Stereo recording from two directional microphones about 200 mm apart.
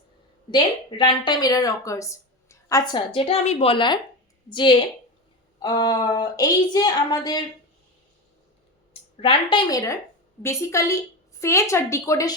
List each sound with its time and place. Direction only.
0.5 s a woman's voice: 25° left (ahead or behind)
8.9 s a woman's voice: 25° left (ahead or behind)